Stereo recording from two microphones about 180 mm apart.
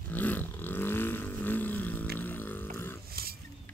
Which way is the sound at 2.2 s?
10° left (ahead or behind).